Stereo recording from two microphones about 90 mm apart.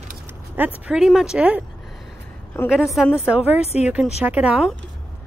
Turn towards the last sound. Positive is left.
turn(degrees=-15)  # may be behind; listen again after turning